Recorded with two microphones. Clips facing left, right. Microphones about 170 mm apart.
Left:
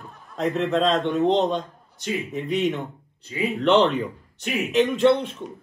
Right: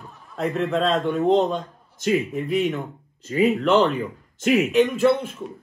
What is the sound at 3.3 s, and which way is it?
Speech, 45° right (ahead or behind).